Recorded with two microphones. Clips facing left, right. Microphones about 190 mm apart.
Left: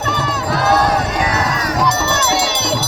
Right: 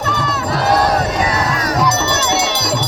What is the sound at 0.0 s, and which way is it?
Crowd, 5° left (ahead or behind).